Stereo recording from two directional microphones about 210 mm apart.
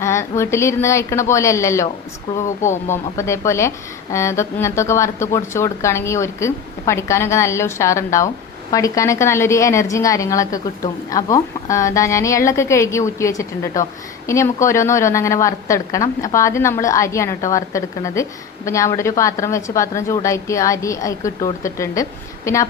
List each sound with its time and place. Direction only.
0.0 s a woman's voice: 15° left (ahead or behind)
2.6 s speech: 35° left (ahead or behind)
2.9 s a woman's voice: 15° left (ahead or behind)